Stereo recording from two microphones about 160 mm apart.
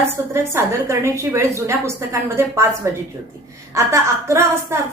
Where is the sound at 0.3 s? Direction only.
15° right (ahead or behind).